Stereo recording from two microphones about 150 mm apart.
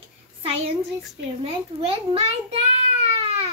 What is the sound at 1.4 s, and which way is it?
A child's voice, 40° right (ahead or behind).